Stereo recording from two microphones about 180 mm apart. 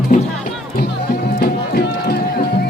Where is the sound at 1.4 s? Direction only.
60° left (ahead or behind).